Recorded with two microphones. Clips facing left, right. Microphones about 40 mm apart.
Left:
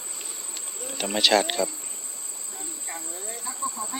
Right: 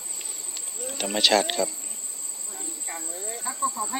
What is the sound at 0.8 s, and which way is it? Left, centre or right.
Speech, centre.